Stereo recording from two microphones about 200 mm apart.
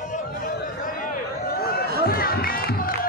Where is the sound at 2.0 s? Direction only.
50° left (ahead or behind).